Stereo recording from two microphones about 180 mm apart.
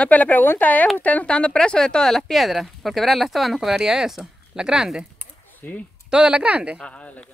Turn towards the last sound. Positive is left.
turn(degrees=5)  # may be behind; listen again after turning